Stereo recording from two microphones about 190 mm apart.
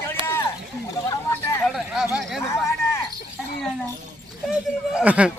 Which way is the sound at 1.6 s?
Centre (ahead or behind).